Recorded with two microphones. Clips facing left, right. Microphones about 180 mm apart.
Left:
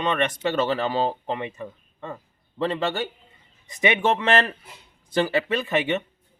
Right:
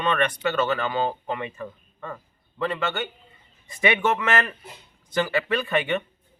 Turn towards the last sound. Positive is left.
turn(degrees=20)  # may be behind; listen again after turning